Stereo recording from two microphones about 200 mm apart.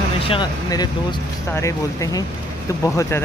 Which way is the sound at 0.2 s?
25° left (ahead or behind).